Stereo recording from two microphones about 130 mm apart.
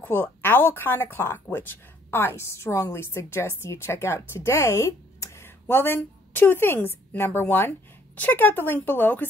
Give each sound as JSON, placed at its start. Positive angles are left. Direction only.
{"t": 0.0, "sound": "speech", "side_deg": 15}